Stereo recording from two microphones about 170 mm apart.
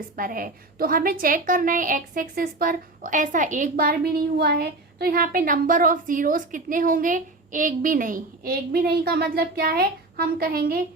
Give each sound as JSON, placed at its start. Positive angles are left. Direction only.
{"t": 0.2, "sound": "a woman's voice", "side_deg": -55}
{"t": 4.4, "sound": "a woman's voice", "side_deg": -70}